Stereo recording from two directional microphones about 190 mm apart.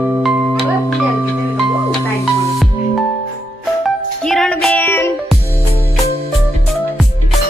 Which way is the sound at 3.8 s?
Centre (ahead or behind).